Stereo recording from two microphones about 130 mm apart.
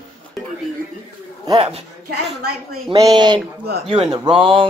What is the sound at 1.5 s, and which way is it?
Speech, 50° right (ahead or behind).